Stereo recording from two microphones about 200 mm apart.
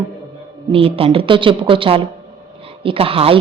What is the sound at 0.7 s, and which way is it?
Speech, 25° right (ahead or behind).